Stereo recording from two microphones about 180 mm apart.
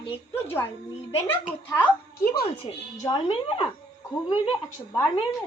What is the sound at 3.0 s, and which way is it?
Speech, 20° left (ahead or behind).